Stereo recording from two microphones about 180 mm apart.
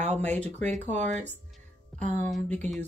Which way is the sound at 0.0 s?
40° right (ahead or behind).